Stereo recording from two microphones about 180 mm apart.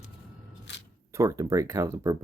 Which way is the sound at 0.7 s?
75° left (ahead or behind).